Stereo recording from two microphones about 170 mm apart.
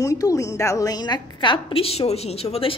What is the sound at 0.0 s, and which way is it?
A woman's voice, 20° left (ahead or behind).